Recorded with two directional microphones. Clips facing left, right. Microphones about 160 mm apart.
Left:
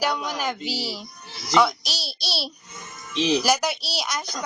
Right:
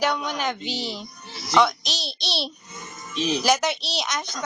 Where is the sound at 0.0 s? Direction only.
5° left (ahead or behind).